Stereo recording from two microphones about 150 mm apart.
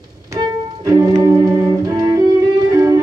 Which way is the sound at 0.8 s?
25° right (ahead or behind).